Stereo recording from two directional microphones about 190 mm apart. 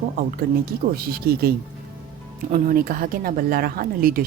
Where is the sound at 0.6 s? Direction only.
50° right (ahead or behind).